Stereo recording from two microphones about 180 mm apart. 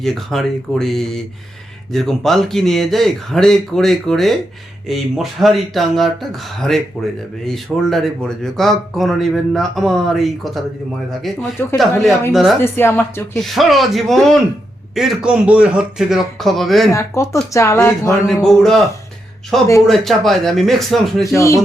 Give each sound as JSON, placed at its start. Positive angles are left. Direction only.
{"t": 0.0, "sound": "speech", "side_deg": 0}
{"t": 11.6, "sound": "speech", "side_deg": 10}
{"t": 12.3, "sound": "speech", "side_deg": 0}
{"t": 12.6, "sound": "speech", "side_deg": 10}
{"t": 13.3, "sound": "speech", "side_deg": 0}
{"t": 16.9, "sound": "speech", "side_deg": 15}
{"t": 18.3, "sound": "speech", "side_deg": 0}
{"t": 21.3, "sound": "speech", "side_deg": 15}